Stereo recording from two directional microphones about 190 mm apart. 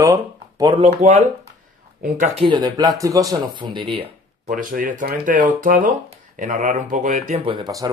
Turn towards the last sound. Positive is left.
turn(degrees=-20)  # may be behind; listen again after turning